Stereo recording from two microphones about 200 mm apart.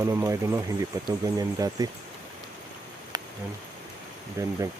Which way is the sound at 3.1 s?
20° right (ahead or behind).